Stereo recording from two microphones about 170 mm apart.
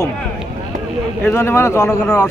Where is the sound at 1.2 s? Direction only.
15° left (ahead or behind).